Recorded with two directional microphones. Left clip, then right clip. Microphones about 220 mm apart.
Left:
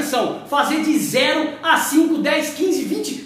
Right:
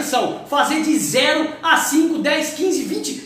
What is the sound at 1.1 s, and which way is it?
A woman's voice, centre (ahead or behind).